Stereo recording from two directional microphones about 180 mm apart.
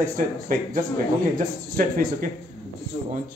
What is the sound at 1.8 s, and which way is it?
Speech, 50° right (ahead or behind).